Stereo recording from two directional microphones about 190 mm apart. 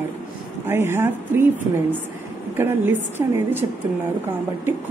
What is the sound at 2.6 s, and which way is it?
A woman's voice, 10° right (ahead or behind).